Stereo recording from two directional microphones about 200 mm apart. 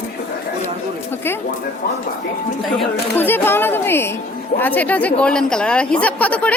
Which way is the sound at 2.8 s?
10° left (ahead or behind).